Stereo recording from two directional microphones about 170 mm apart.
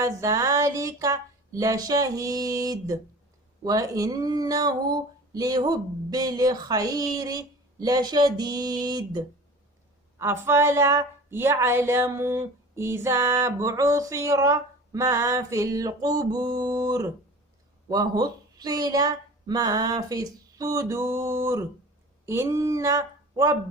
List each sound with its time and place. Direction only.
0.0 s speech: 20° right (ahead or behind)
10.2 s speech: 15° right (ahead or behind)